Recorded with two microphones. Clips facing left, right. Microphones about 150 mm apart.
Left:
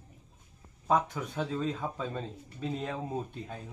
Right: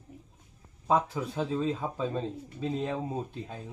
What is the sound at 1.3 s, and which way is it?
Speech, 10° right (ahead or behind).